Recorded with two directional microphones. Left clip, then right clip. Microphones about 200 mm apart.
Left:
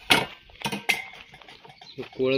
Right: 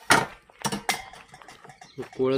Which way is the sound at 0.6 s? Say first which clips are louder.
Left 2 dB; 15° right (ahead or behind).